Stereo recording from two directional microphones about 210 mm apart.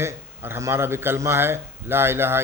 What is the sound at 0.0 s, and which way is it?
A man's voice, 10° right (ahead or behind).